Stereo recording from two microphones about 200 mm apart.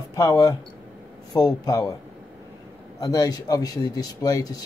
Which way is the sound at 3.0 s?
15° left (ahead or behind).